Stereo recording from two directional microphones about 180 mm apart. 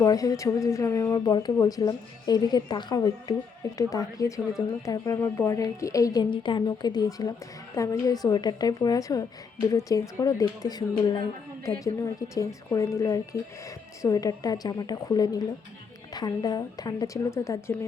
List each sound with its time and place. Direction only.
0.0 s speech: 20° left (ahead or behind)